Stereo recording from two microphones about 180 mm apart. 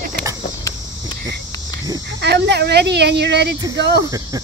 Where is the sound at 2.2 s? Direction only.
70° right (ahead or behind).